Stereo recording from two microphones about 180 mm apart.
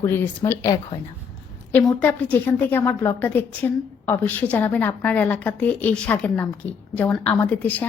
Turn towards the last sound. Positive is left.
turn(degrees=10)  # may be behind; listen again after turning